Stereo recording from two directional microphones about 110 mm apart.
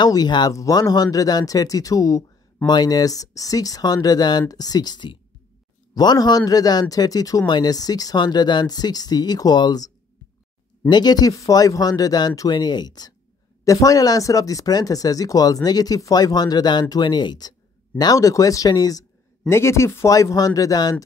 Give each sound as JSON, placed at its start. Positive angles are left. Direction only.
{"t": 0.0, "sound": "speech", "side_deg": 40}